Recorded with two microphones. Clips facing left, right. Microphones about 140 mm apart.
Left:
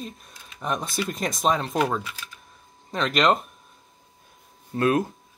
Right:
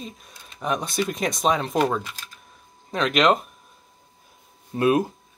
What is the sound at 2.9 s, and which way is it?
Speech, centre (ahead or behind).